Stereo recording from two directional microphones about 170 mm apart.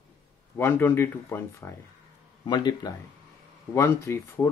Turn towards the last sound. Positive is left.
turn(degrees=15)  # may be behind; listen again after turning